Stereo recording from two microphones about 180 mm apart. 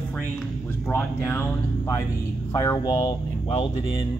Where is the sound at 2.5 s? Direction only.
15° left (ahead or behind).